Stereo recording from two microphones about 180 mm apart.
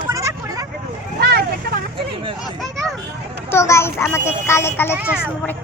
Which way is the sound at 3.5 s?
15° left (ahead or behind).